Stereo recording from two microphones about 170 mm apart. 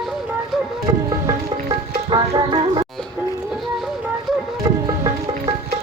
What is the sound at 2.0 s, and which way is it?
Music, 25° right (ahead or behind).